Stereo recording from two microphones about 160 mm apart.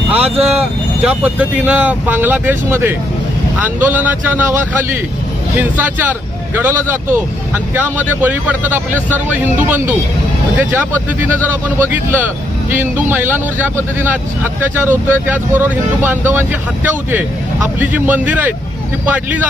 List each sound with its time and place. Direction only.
0.2 s speech: 40° right (ahead or behind)
1.0 s speech: 10° right (ahead or behind)